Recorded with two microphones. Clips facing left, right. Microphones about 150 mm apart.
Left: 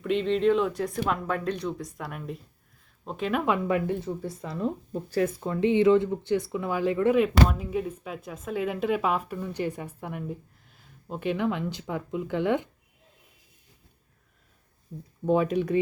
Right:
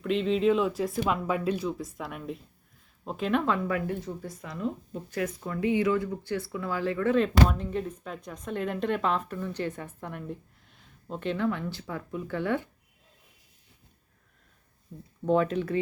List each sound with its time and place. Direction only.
0.0 s speech: centre (ahead or behind)
3.4 s speech: 20° left (ahead or behind)
15.3 s speech: 10° left (ahead or behind)